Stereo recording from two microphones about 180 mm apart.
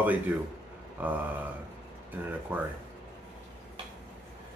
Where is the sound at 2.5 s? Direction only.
10° right (ahead or behind).